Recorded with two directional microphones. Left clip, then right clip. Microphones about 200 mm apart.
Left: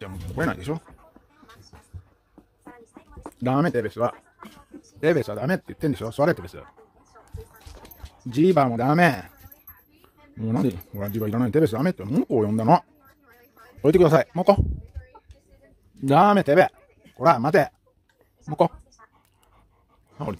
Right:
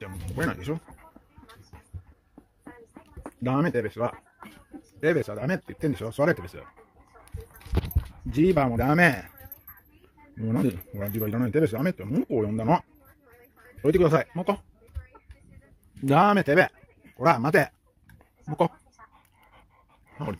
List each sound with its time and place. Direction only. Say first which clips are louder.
0.0 s speech: left 3 dB; 5° left (ahead or behind)
3.4 s speech: left 3 dB; 5° left (ahead or behind)
8.3 s speech: left 4 dB; 10° left (ahead or behind)
10.4 s speech: left 2 dB; 5° left (ahead or behind)
13.8 s speech: left 4 dB; 15° left (ahead or behind)
16.1 s speech: left 3 dB; centre (ahead or behind)